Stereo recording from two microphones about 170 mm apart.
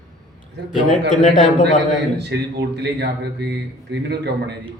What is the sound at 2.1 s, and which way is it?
Speech, 85° right.